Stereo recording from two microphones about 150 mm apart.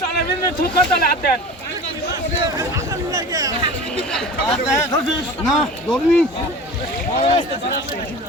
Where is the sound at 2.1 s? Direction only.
25° right (ahead or behind).